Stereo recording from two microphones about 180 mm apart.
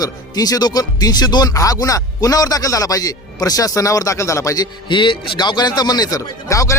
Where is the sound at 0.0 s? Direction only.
20° left (ahead or behind).